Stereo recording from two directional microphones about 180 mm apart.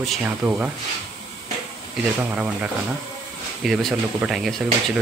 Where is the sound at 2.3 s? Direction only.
10° right (ahead or behind).